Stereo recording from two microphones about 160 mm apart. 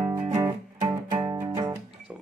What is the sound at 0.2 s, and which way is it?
Music, 20° right (ahead or behind).